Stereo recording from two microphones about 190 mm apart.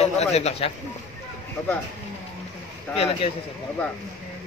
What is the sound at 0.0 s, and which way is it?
Speech, 35° left (ahead or behind).